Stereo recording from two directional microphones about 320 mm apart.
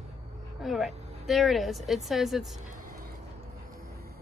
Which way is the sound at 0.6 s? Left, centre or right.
Centre.